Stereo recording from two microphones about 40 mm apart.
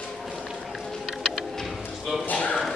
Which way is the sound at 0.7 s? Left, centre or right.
Centre.